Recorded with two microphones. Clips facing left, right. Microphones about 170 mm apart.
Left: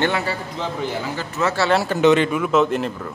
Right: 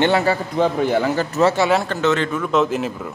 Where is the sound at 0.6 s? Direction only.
55° right (ahead or behind).